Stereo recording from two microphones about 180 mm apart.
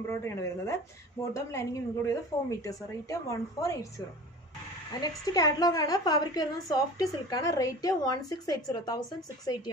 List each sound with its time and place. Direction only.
0.1 s a woman's voice: 15° left (ahead or behind)
5.0 s a woman's voice: 20° left (ahead or behind)